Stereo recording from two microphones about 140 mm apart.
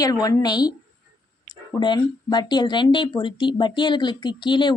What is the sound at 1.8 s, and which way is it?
Speech, 30° left (ahead or behind).